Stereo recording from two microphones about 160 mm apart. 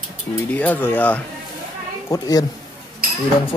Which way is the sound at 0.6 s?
10° left (ahead or behind).